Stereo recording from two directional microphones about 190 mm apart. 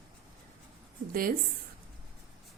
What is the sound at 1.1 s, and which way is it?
Speech, 50° right (ahead or behind).